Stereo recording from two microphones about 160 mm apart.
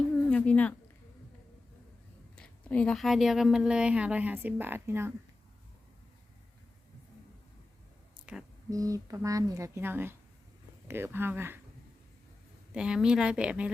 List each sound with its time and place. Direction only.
0.3 s speech: 10° left (ahead or behind)
2.3 s speech: 5° left (ahead or behind); by 5.1 s 15° right (ahead or behind)
8.1 s a sound: 5° right (ahead or behind)
8.7 s speech: 20° right (ahead or behind)
12.7 s speech: 5° right (ahead or behind)